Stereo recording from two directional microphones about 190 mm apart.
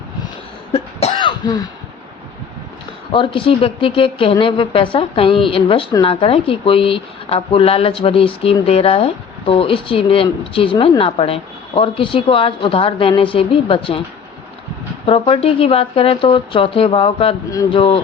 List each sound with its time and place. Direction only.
0.7 s cough: 30° left (ahead or behind)
3.1 s speech: 25° left (ahead or behind)
15.0 s speech: 30° left (ahead or behind)